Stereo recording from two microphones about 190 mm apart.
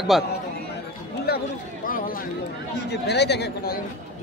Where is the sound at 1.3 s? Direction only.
55° left (ahead or behind).